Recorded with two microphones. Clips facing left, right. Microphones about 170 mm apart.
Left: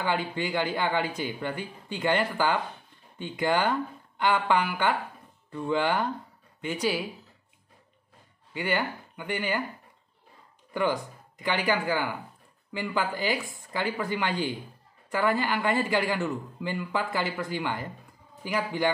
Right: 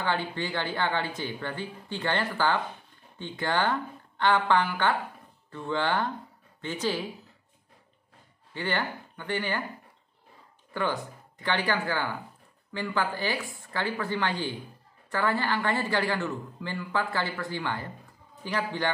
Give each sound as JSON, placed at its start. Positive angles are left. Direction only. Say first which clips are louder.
{"t": 0.0, "sound": "speech", "louder": "left 1 dB", "side_deg": 15}
{"t": 8.5, "sound": "speech", "louder": "left 2 dB", "side_deg": 10}
{"t": 10.7, "sound": "speech", "louder": "left 3 dB", "side_deg": 15}